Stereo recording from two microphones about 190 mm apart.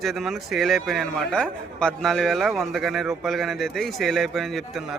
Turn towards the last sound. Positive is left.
turn(degrees=0)  # may be behind; listen again after turning